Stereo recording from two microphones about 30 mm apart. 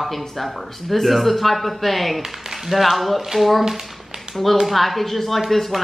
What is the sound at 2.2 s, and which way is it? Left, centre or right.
Speech, centre.